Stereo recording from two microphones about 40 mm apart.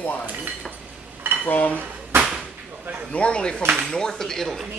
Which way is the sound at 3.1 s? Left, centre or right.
Left.